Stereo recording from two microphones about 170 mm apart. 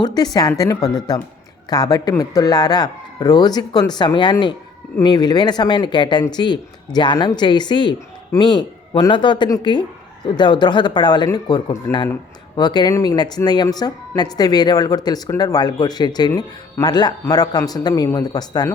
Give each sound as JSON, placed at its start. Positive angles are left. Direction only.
{"t": 0.0, "sound": "a woman's voice", "side_deg": 25}